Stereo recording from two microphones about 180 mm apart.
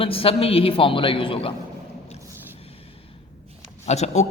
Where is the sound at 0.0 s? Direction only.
30° left (ahead or behind).